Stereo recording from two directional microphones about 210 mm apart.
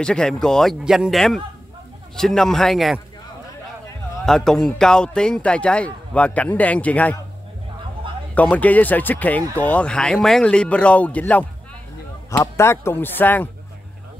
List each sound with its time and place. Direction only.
0.0 s speech: 5° left (ahead or behind)
4.3 s speech: centre (ahead or behind)
8.0 s a sound: 25° right (ahead or behind)
8.4 s speech: 5° left (ahead or behind)